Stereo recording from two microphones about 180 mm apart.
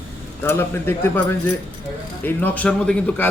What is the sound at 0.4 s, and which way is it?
Speech, 15° left (ahead or behind).